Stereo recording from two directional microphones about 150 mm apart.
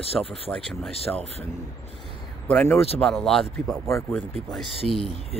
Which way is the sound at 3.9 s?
20° left (ahead or behind).